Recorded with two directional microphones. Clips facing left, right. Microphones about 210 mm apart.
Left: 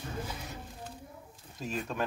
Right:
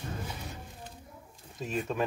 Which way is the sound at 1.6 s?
Centre (ahead or behind).